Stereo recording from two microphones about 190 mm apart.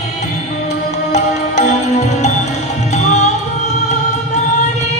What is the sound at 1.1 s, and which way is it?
Music, 35° left (ahead or behind).